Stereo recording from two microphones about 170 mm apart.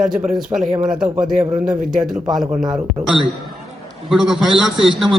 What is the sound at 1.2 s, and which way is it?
Speech, 20° right (ahead or behind).